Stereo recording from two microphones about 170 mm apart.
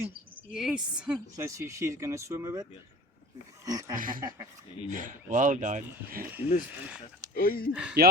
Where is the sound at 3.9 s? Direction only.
55° right (ahead or behind).